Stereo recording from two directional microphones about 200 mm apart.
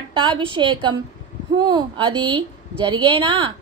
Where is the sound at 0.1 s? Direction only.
25° right (ahead or behind).